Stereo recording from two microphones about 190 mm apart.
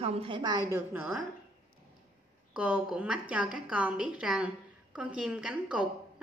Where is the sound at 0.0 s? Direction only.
30° right (ahead or behind); by 1.2 s 5° right (ahead or behind).